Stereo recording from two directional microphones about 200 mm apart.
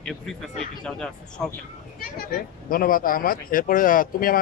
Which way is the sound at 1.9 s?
45° left (ahead or behind).